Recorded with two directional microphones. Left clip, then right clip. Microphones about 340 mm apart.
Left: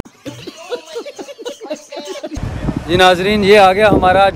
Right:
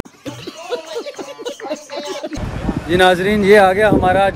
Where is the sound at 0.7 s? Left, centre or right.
Centre.